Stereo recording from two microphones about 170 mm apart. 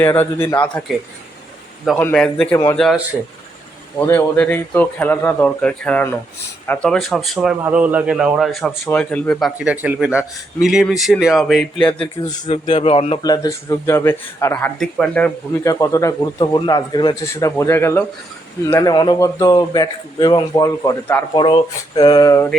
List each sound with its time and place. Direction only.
0.0 s a man's voice: 15° left (ahead or behind)
2.0 s a man's voice: 5° left (ahead or behind)
3.9 s a man's voice: 15° left (ahead or behind)
9.8 s speech: 5° right (ahead or behind)
12.5 s a man's voice: 40° left (ahead or behind)
13.2 s a man's voice: 20° left (ahead or behind)
14.8 s speech: 5° left (ahead or behind)
15.6 s a man's voice: 20° left (ahead or behind)